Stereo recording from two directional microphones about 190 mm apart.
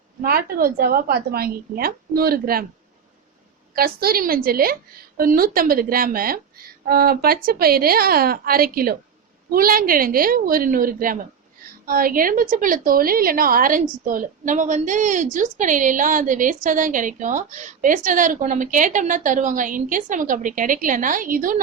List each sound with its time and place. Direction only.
0.2 s a woman's voice: 50° right (ahead or behind)
3.8 s a woman's voice: 50° right (ahead or behind)